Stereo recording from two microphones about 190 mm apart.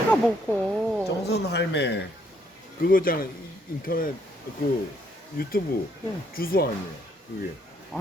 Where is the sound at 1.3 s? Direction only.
60° left (ahead or behind).